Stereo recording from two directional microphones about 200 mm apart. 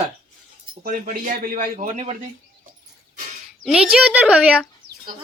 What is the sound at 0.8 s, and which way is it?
A man's voice, 45° right (ahead or behind).